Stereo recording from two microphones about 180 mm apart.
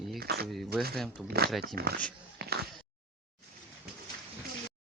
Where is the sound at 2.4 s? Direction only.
65° right (ahead or behind).